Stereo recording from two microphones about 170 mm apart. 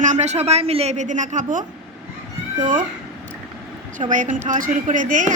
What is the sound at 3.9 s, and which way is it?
A woman's voice, 50° right (ahead or behind).